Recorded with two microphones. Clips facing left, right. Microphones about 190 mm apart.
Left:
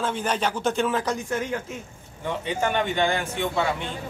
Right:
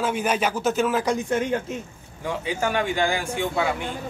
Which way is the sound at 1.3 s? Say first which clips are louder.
Right 4 dB; 20° right (ahead or behind).